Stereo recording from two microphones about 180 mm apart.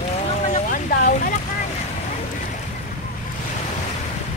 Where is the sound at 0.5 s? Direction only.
50° left (ahead or behind).